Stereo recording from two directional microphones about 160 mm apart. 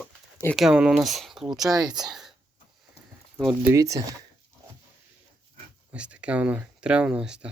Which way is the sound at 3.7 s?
20° right (ahead or behind).